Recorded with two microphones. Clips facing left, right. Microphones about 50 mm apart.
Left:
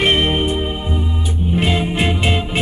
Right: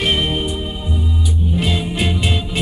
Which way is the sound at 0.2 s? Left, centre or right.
Left.